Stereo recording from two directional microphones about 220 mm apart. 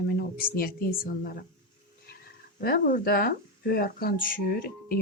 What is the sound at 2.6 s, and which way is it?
Speech, 40° left (ahead or behind).